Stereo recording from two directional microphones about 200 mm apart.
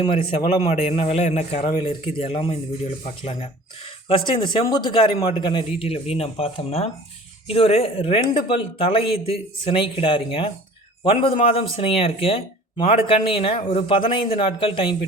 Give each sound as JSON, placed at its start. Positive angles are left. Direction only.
{"t": 0.0, "sound": "a man's voice", "side_deg": 25}